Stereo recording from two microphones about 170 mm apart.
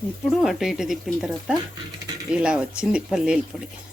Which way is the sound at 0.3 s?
Centre (ahead or behind).